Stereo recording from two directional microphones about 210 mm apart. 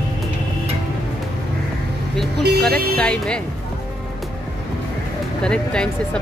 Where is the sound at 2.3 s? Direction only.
50° right (ahead or behind).